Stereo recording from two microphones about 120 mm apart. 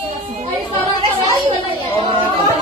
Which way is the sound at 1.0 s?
50° right (ahead or behind).